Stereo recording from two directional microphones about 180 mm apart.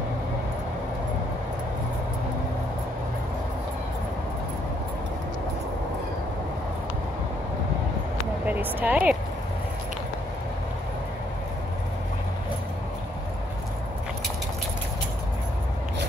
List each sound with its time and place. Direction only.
8.5 s speech: 10° right (ahead or behind)